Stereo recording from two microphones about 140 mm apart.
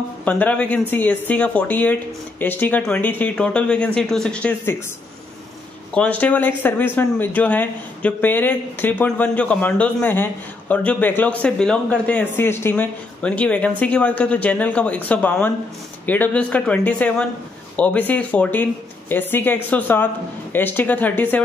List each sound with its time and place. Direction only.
0.2 s speech: 10° left (ahead or behind)
5.9 s speech: 10° left (ahead or behind)